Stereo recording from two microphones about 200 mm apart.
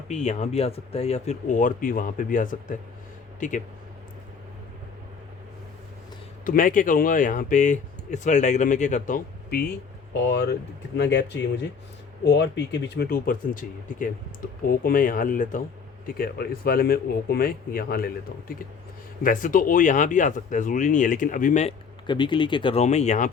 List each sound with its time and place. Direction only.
0.1 s speech: 35° left (ahead or behind)
6.4 s speech: 40° left (ahead or behind)
10.2 s speech: 60° left (ahead or behind); by 23.3 s 35° left (ahead or behind)